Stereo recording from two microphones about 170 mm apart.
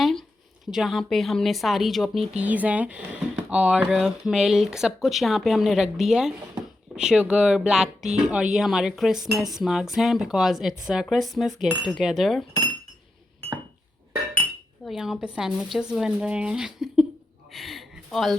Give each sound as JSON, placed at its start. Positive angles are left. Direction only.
{"t": 0.0, "sound": "speech", "side_deg": 0}
{"t": 14.8, "sound": "speech", "side_deg": 0}
{"t": 17.5, "sound": "a sound", "side_deg": 0}